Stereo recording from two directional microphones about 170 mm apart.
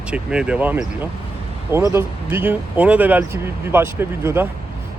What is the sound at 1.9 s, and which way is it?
Speech, 15° right (ahead or behind).